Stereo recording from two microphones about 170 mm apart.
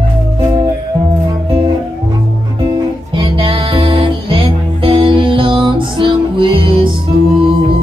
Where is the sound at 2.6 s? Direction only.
25° right (ahead or behind).